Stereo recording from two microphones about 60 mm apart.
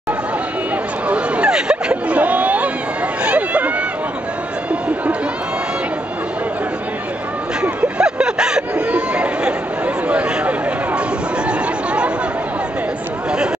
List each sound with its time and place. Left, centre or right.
1.0 s a sound: centre
3.3 s run: right
8.0 s chatter: centre